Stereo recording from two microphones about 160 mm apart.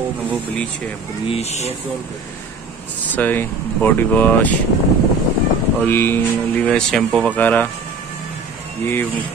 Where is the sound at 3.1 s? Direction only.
10° left (ahead or behind).